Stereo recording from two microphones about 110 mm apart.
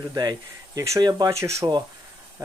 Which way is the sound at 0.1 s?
35° right (ahead or behind).